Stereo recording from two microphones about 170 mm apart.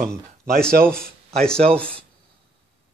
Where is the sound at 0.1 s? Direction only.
5° left (ahead or behind).